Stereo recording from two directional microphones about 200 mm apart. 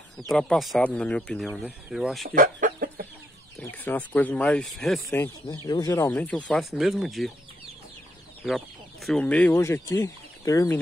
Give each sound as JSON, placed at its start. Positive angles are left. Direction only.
{"t": 0.3, "sound": "speech", "side_deg": 0}
{"t": 2.2, "sound": "chicken", "side_deg": -45}
{"t": 3.5, "sound": "speech", "side_deg": 10}
{"t": 5.0, "sound": "speech", "side_deg": 15}
{"t": 8.5, "sound": "speech", "side_deg": 0}